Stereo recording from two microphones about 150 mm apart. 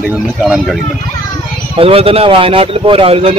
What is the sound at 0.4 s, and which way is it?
Speech, centre (ahead or behind).